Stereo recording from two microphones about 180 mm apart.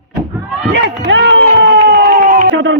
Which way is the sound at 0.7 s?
75° right (ahead or behind).